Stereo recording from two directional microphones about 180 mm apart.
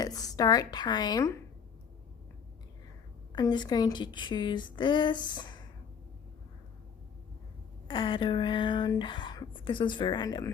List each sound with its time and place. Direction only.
0.0 s a woman's voice: 20° left (ahead or behind)
3.3 s speech: 25° left (ahead or behind)
7.9 s speech: 30° left (ahead or behind)